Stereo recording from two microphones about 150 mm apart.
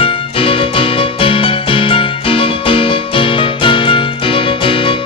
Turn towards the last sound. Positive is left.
turn(degrees=35)  # may be behind; listen again after turning